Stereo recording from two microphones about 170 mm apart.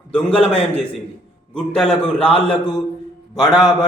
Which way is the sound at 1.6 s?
5° left (ahead or behind).